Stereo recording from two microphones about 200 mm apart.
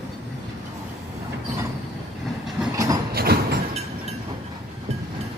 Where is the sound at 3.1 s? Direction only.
50° right (ahead or behind).